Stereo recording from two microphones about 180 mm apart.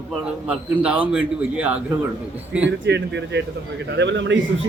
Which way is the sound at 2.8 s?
75° right (ahead or behind).